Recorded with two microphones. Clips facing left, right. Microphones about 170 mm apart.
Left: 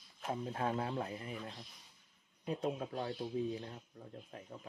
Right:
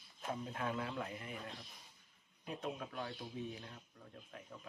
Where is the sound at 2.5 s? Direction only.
30° left (ahead or behind).